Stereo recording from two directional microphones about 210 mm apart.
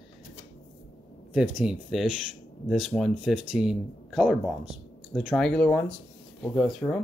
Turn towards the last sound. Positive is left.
turn(degrees=5)  # may be behind; listen again after turning